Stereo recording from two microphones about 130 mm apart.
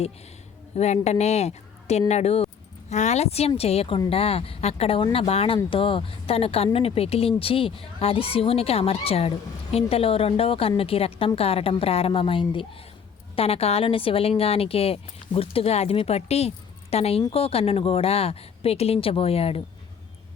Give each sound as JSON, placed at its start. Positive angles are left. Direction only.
{"t": 0.8, "sound": "a woman's voice", "side_deg": 60}